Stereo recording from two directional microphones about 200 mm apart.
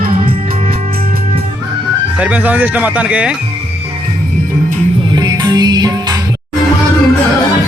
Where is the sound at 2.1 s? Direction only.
5° right (ahead or behind).